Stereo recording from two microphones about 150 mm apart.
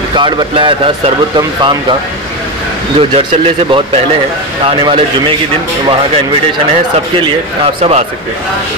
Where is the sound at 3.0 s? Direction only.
40° right (ahead or behind).